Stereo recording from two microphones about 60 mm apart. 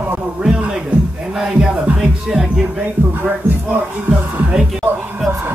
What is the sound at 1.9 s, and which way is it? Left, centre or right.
Speech, centre.